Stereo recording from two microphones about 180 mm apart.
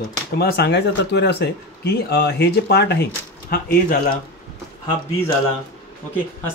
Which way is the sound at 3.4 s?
55° left (ahead or behind).